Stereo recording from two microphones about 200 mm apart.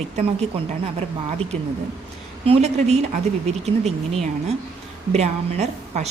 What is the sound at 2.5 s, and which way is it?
A woman's voice, 35° right (ahead or behind).